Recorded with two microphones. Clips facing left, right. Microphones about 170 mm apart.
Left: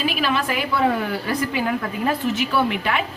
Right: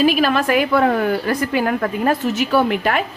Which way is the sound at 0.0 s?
45° right (ahead or behind).